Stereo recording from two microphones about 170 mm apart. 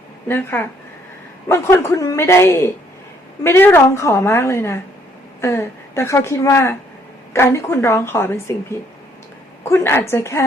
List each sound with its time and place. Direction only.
0.3 s a woman's voice: 10° left (ahead or behind)
9.6 s a woman's voice: 15° left (ahead or behind)